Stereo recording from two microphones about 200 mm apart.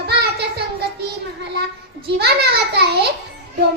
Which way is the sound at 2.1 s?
55° right (ahead or behind).